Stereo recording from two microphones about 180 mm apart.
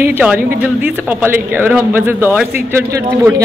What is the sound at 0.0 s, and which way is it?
A woman's voice, 10° right (ahead or behind).